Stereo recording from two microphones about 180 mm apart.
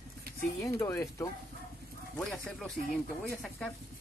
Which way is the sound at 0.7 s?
15° left (ahead or behind).